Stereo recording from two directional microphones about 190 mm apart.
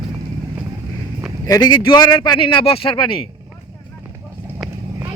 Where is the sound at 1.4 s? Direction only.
20° left (ahead or behind).